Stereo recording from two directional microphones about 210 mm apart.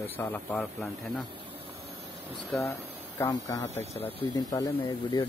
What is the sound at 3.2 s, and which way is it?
Speech, 15° left (ahead or behind).